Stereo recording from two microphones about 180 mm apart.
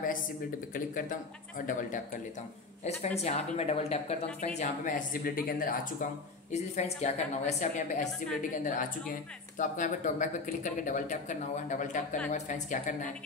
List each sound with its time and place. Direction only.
0.7 s speech: 50° left (ahead or behind)
4.6 s speech: 45° left (ahead or behind)
6.5 s speech: 40° left (ahead or behind)